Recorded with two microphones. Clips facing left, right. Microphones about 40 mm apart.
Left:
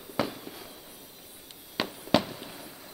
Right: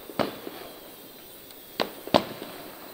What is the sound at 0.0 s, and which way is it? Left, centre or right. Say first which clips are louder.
Fireworks: right 2 dB; centre.